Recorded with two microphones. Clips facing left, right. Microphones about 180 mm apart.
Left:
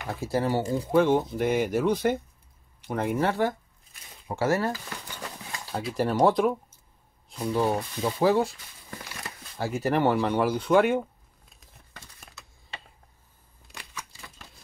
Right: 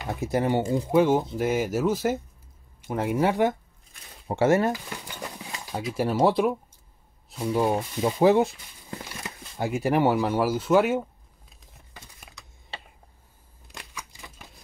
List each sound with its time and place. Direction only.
0.1 s speech: 20° right (ahead or behind); by 11.5 s centre (ahead or behind)
12.2 s typing: 5° right (ahead or behind)
13.7 s scissors: 15° right (ahead or behind)